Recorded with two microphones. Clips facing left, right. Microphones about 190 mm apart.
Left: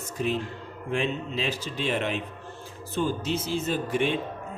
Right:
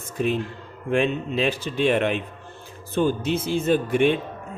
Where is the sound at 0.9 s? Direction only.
60° right (ahead or behind).